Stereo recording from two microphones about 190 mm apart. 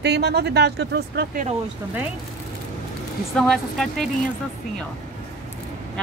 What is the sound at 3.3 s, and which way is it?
Speech, centre (ahead or behind).